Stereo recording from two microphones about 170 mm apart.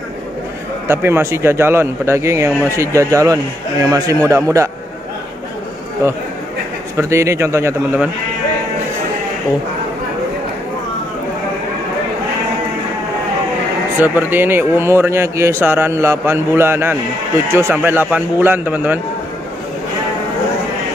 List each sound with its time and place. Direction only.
0.8 s a man's voice: 15° right (ahead or behind)
7.0 s speech: 15° right (ahead or behind)
13.9 s speech: 10° right (ahead or behind)